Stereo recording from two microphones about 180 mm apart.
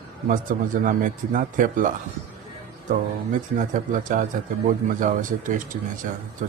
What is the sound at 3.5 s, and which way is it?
A man's voice, 45° right (ahead or behind).